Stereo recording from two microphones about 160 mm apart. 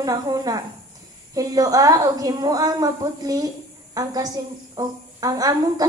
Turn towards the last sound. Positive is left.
turn(degrees=-25)  # may be behind; listen again after turning